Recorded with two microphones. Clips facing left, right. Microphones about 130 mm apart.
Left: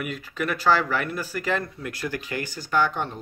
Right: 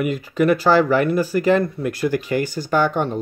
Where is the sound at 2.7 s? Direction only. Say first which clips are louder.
Right 5 dB; 50° right (ahead or behind).